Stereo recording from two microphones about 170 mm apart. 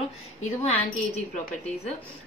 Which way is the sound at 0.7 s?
35° left (ahead or behind).